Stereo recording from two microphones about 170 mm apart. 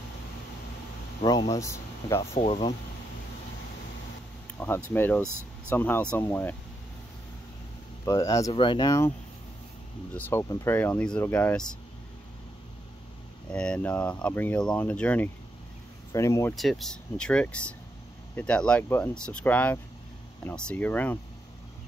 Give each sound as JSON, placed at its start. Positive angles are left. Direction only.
{"t": 1.2, "sound": "speech", "side_deg": 20}
{"t": 2.1, "sound": "speech", "side_deg": 40}
{"t": 4.6, "sound": "speech", "side_deg": 10}
{"t": 8.0, "sound": "speech", "side_deg": 20}
{"t": 10.1, "sound": "speech", "side_deg": 15}
{"t": 13.5, "sound": "speech", "side_deg": 5}
{"t": 16.5, "sound": "speech", "side_deg": 0}